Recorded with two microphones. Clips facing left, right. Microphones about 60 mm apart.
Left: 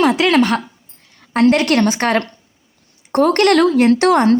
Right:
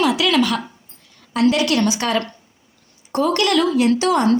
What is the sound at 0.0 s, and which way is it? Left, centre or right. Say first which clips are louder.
A woman's voice: left 4 dB; left.